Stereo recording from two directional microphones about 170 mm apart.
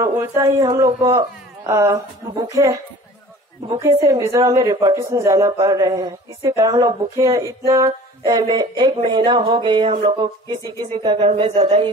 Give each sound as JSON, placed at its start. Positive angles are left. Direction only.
{"t": 0.0, "sound": "a man's voice", "side_deg": -15}